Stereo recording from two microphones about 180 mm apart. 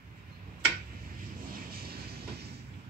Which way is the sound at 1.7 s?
60° right (ahead or behind).